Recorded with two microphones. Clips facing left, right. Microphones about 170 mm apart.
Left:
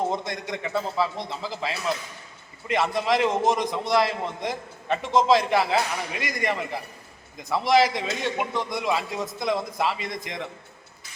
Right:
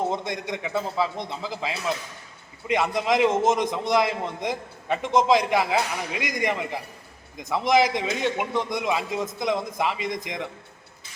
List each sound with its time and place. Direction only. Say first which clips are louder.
0.1 s a man's voice: right 1 dB; 20° right (ahead or behind)